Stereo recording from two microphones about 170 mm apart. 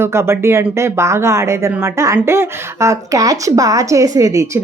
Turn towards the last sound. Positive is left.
turn(degrees=-20)  # may be behind; listen again after turning